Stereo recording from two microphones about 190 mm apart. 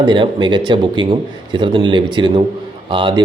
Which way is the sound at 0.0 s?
25° right (ahead or behind).